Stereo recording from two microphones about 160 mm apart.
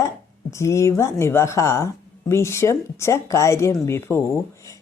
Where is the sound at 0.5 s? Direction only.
20° left (ahead or behind).